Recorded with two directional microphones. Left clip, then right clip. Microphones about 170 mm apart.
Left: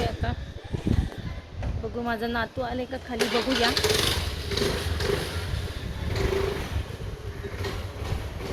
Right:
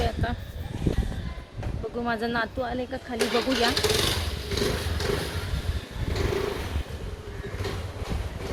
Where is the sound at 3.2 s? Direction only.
15° left (ahead or behind).